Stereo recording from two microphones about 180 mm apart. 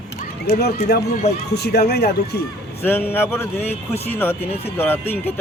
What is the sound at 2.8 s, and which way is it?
Speech, 10° left (ahead or behind).